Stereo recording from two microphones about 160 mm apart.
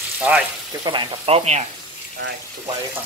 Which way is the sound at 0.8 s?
35° right (ahead or behind).